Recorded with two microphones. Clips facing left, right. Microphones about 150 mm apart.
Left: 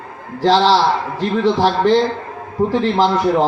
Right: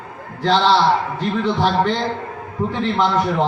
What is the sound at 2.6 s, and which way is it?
Speech, 35° left (ahead or behind).